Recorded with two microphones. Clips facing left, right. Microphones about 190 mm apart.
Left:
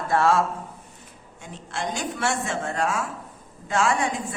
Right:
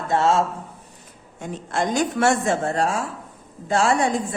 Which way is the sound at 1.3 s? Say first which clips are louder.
Right 8 dB; 45° right (ahead or behind).